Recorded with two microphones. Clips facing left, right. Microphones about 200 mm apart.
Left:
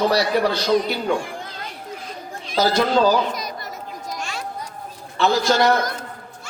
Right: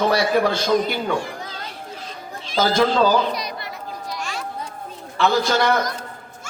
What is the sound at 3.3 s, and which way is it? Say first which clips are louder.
Chatter: right 1 dB; 45° left (ahead or behind).